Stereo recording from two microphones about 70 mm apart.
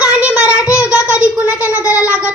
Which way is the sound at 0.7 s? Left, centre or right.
Left.